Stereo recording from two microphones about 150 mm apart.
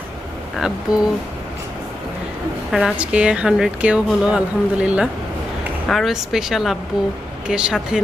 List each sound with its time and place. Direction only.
0.5 s speech: 5° right (ahead or behind)
2.7 s speech: 5° right (ahead or behind)